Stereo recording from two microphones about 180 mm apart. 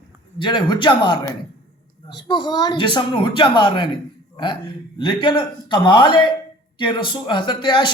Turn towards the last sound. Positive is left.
turn(degrees=25)  # may be behind; listen again after turning